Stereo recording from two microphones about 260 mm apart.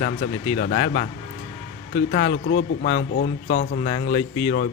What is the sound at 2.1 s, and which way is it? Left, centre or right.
Speech, left.